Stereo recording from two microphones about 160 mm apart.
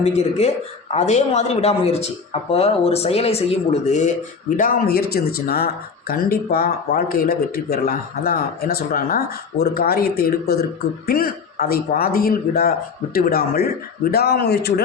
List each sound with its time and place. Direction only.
0.0 s a man's voice: 40° left (ahead or behind); by 14.7 s 90° left